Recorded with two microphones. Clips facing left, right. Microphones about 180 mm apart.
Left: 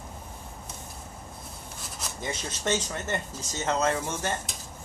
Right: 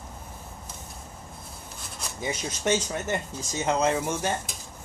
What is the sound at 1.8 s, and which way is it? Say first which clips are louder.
Rub: even; centre (ahead or behind).